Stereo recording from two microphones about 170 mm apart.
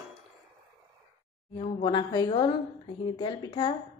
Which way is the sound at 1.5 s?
30° left (ahead or behind).